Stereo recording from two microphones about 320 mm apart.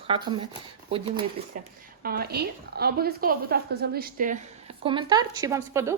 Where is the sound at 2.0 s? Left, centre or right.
Right.